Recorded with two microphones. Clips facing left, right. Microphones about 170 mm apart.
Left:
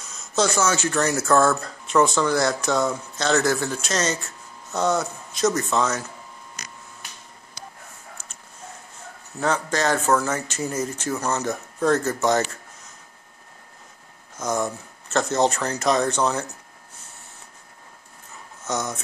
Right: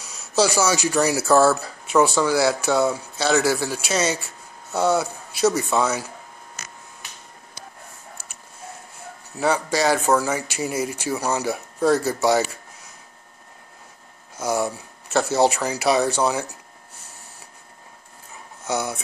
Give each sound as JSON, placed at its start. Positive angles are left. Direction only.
{"t": 0.0, "sound": "speech", "side_deg": -10}
{"t": 9.4, "sound": "speech", "side_deg": -10}
{"t": 14.3, "sound": "speech", "side_deg": -10}
{"t": 18.6, "sound": "speech", "side_deg": -10}